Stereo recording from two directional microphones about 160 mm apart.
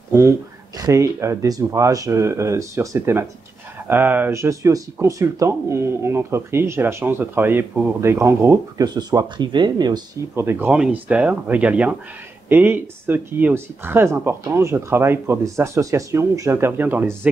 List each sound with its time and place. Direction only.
0.7 s speech: 20° right (ahead or behind)
10.3 s speech: 15° right (ahead or behind)